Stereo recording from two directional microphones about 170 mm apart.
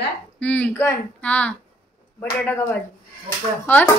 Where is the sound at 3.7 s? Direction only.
10° left (ahead or behind).